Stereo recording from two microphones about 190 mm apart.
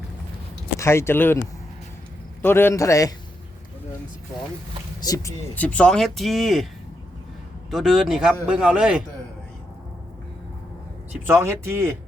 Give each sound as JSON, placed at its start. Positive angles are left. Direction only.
{"t": 0.8, "sound": "a man's voice", "side_deg": 15}
{"t": 2.4, "sound": "a man's voice", "side_deg": 10}
{"t": 4.9, "sound": "speech", "side_deg": 20}
{"t": 5.5, "sound": "a man's voice", "side_deg": 5}
{"t": 7.7, "sound": "a man's voice", "side_deg": 0}
{"t": 11.1, "sound": "speech", "side_deg": -10}